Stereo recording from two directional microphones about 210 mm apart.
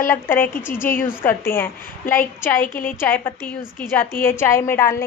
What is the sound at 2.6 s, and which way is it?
Speech, 40° left (ahead or behind).